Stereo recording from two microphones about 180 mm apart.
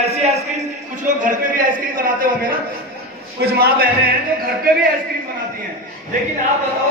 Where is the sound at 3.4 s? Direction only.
60° right (ahead or behind).